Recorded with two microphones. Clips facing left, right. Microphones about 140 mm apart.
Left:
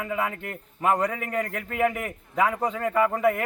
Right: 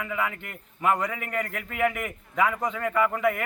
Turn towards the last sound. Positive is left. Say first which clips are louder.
# left 2 dB
turn(degrees=35)  # may be behind; listen again after turning